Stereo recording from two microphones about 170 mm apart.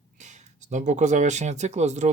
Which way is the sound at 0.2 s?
45° right (ahead or behind).